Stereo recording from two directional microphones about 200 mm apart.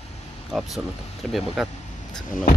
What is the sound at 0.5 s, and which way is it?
Speech, centre (ahead or behind).